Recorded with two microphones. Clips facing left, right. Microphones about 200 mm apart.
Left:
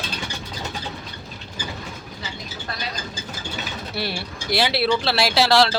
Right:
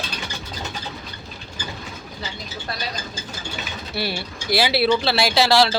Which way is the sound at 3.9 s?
Centre (ahead or behind).